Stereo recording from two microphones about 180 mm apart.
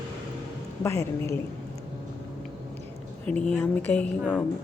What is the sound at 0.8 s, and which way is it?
Speech, 15° left (ahead or behind).